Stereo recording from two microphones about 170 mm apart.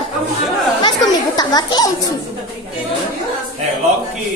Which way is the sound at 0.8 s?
25° left (ahead or behind).